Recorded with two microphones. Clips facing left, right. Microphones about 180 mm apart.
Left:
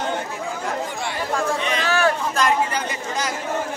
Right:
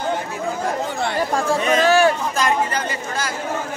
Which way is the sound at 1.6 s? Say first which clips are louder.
Right 7 dB; 45° right (ahead or behind).